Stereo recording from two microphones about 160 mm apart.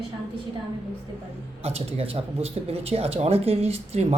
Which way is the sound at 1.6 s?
40° right (ahead or behind).